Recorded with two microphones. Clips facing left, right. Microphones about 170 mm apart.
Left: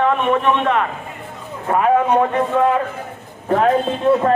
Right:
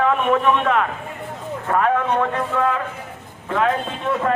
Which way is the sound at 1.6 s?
15° left (ahead or behind).